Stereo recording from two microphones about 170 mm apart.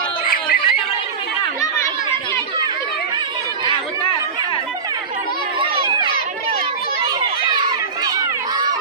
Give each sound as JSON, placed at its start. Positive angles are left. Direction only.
{"t": 0.2, "sound": "a sound", "side_deg": 60}
{"t": 1.6, "sound": "chatter", "side_deg": 15}
{"t": 8.0, "sound": "run", "side_deg": -25}